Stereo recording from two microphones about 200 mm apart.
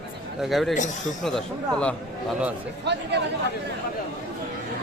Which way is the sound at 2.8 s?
60° right (ahead or behind).